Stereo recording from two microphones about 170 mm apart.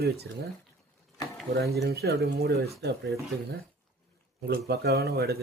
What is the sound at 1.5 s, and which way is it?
Speech, 65° right (ahead or behind).